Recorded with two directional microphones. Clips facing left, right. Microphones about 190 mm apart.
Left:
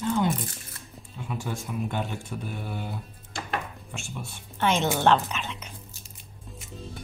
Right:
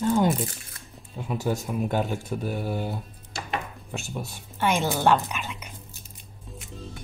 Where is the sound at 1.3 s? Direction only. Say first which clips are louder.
Right 6 dB; 40° right (ahead or behind).